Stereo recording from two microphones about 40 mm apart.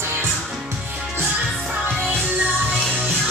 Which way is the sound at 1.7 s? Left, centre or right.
Right.